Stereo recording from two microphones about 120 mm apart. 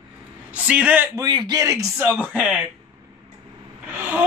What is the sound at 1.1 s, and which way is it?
Speech, 35° right (ahead or behind).